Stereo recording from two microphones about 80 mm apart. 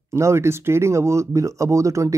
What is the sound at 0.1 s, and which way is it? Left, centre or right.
Speech, right.